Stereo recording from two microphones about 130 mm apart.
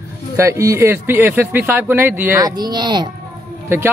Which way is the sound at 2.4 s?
30° right (ahead or behind).